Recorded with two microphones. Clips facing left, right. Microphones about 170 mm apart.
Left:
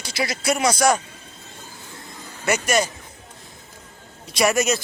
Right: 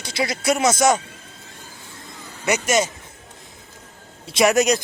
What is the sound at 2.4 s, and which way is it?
Speech, 20° right (ahead or behind).